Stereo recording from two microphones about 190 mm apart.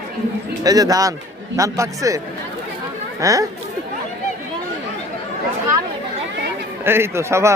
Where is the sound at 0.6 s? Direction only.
20° right (ahead or behind).